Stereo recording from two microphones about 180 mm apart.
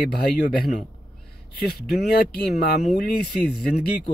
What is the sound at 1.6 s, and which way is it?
Speech, 60° left (ahead or behind).